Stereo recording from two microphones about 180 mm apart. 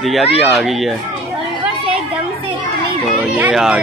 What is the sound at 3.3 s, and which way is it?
Speech, 5° right (ahead or behind).